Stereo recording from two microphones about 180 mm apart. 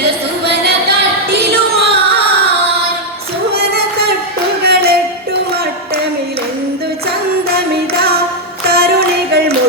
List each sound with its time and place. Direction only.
0.0 s a sound: 60° right (ahead or behind)
3.5 s music: 60° right (ahead or behind)
8.7 s music: 60° right (ahead or behind)